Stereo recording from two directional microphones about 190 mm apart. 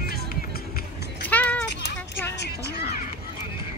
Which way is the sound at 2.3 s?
60° left (ahead or behind).